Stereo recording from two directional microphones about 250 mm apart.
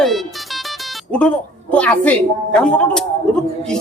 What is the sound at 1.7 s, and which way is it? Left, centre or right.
A man's voice, centre.